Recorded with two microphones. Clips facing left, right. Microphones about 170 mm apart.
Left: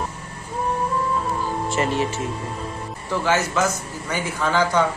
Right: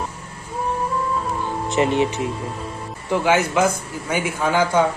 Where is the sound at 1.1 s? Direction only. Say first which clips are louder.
Even; centre (ahead or behind).